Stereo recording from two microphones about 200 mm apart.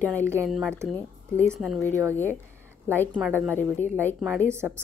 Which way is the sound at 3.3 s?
10° right (ahead or behind).